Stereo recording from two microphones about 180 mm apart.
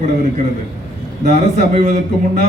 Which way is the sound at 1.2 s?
40° right (ahead or behind).